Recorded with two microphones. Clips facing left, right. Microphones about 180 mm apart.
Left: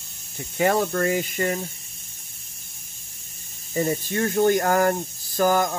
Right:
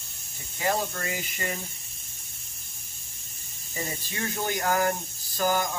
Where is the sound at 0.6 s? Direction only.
65° left (ahead or behind); by 1.6 s 50° left (ahead or behind).